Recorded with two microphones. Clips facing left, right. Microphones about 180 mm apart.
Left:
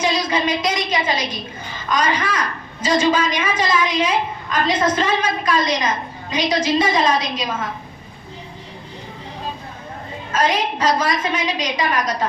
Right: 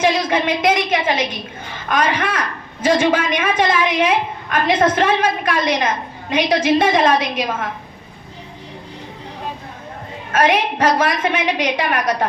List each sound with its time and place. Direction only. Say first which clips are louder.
0.0 s a woman's voice: right 3 dB; 55° right (ahead or behind)
10.3 s a woman's voice: right 3 dB; 60° right (ahead or behind)